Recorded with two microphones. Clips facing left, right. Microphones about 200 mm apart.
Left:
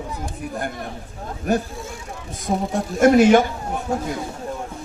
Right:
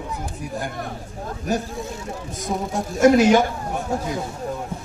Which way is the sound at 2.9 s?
55° left (ahead or behind).